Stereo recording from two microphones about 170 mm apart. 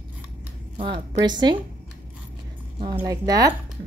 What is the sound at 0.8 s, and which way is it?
Speech, 30° right (ahead or behind).